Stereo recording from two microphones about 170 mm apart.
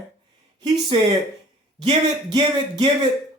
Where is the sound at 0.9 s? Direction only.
30° right (ahead or behind).